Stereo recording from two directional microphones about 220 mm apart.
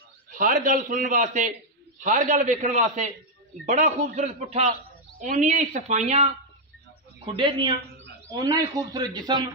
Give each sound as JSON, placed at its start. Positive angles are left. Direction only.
{"t": 0.4, "sound": "a man's voice", "side_deg": -35}
{"t": 7.3, "sound": "a man's voice", "side_deg": -25}